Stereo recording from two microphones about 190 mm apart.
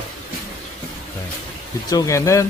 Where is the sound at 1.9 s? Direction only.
15° left (ahead or behind).